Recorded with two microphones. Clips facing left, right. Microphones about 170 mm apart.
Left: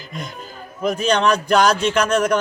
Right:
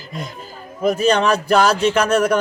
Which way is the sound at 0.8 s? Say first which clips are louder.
Right 2 dB; 5° right (ahead or behind).